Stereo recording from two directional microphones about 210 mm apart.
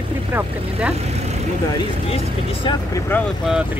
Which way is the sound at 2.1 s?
25° left (ahead or behind).